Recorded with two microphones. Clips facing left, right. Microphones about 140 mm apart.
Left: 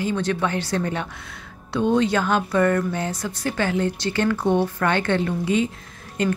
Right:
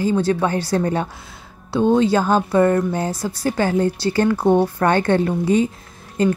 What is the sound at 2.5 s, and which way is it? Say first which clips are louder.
Speech: right 4 dB; 25° right (ahead or behind).